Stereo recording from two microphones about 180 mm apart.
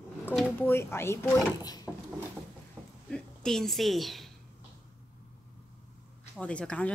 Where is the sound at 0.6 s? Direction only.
15° left (ahead or behind).